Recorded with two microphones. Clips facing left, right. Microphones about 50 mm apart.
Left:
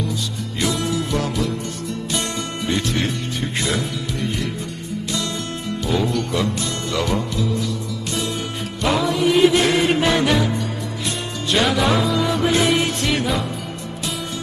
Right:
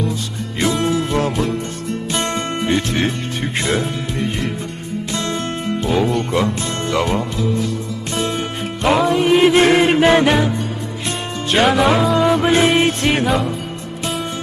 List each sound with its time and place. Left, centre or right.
0.6 s music: right
6.1 s speech: right
8.1 s music: right
11.5 s music: right
13.2 s music: centre